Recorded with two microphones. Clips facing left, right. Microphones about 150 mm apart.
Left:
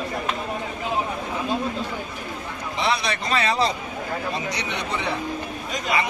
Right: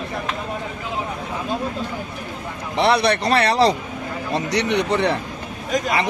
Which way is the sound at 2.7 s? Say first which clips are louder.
Right 7 dB; 70° right (ahead or behind).